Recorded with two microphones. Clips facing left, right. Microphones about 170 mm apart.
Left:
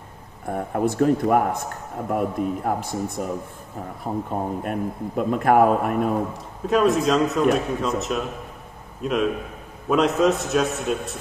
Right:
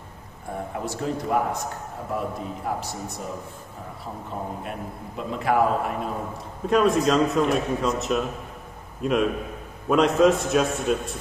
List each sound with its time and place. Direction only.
0.5 s a man's voice: 55° left (ahead or behind)
6.6 s a man's voice: centre (ahead or behind)